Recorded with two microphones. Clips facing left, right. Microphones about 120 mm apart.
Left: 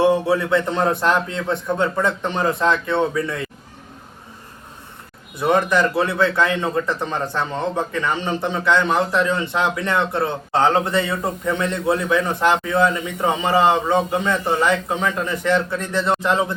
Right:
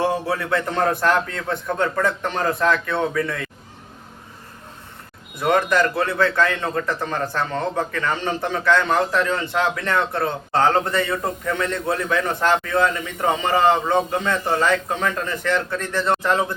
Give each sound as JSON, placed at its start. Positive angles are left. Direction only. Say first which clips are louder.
{"t": 0.0, "sound": "a man's voice", "louder": "left 5 dB", "side_deg": 20}
{"t": 5.4, "sound": "a man's voice", "louder": "left 1 dB", "side_deg": 20}